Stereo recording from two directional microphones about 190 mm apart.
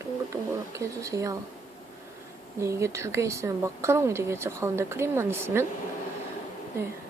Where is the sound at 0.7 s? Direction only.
15° right (ahead or behind).